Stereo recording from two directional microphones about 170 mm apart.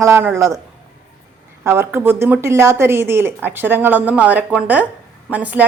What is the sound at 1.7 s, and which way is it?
A woman's voice, 15° right (ahead or behind).